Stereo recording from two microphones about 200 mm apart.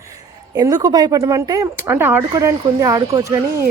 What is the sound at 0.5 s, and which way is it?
Speech, 20° right (ahead or behind).